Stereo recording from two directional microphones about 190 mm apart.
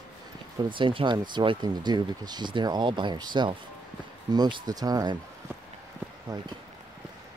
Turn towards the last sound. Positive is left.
turn(degrees=-20)  # may be behind; listen again after turning